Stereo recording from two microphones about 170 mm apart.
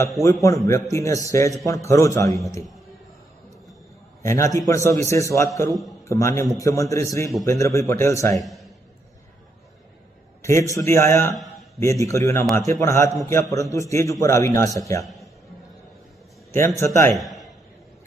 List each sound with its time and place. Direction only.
0.4 s a man's voice: 20° left (ahead or behind)
4.2 s a man's voice: 15° left (ahead or behind)
8.4 s a man's voice: centre (ahead or behind)
10.4 s a man's voice: 20° left (ahead or behind)
16.5 s a man's voice: 15° left (ahead or behind)
17.2 s a man's voice: centre (ahead or behind)